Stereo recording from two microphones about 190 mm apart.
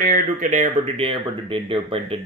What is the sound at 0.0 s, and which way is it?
A man's voice, 40° right (ahead or behind).